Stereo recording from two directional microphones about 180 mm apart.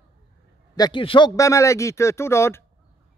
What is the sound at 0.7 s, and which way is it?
Speech, 25° left (ahead or behind).